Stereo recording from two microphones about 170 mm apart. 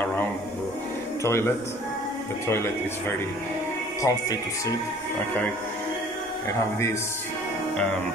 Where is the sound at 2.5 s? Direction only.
15° left (ahead or behind).